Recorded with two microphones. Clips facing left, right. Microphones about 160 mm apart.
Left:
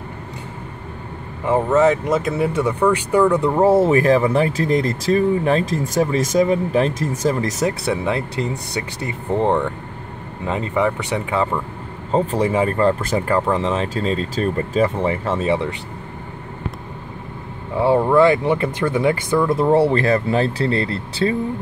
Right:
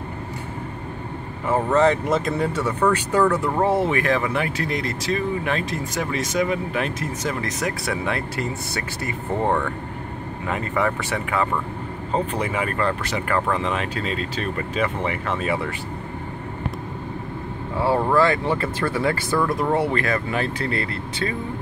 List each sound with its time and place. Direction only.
1.5 s speech: 5° left (ahead or behind)
3.6 s speech: 40° left (ahead or behind)
12.1 s speech: 35° left (ahead or behind)
17.7 s speech: 25° left (ahead or behind)
19.6 s speech: 30° left (ahead or behind)